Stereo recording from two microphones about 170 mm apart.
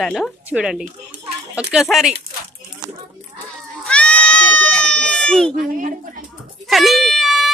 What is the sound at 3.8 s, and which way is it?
Goat, 5° left (ahead or behind).